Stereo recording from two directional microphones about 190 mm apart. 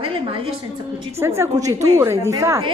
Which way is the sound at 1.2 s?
15° right (ahead or behind).